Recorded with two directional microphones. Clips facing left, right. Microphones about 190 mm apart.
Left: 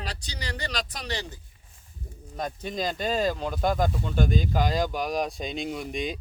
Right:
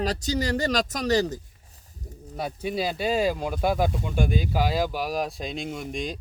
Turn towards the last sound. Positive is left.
turn(degrees=0)  # may be behind; listen again after turning